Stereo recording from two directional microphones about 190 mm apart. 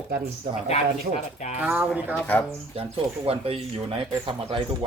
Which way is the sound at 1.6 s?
5° right (ahead or behind).